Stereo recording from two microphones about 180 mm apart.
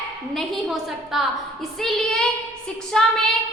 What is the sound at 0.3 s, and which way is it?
A woman's voice, centre (ahead or behind).